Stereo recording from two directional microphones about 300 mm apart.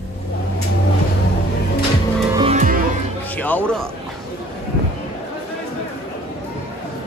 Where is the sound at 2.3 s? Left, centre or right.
Right.